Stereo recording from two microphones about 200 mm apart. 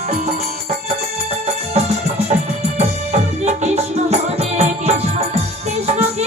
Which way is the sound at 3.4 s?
35° right (ahead or behind).